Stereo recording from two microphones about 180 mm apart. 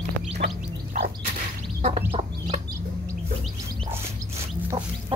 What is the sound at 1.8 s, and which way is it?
Chicken, 35° right (ahead or behind).